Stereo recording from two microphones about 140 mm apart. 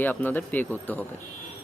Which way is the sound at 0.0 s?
15° left (ahead or behind).